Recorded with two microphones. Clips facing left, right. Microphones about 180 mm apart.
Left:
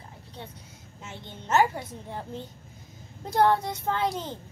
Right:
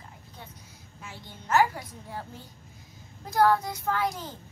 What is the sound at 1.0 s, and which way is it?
A woman's voice, 25° left (ahead or behind).